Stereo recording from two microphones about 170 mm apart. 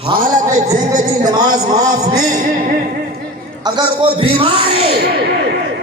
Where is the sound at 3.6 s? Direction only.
25° right (ahead or behind).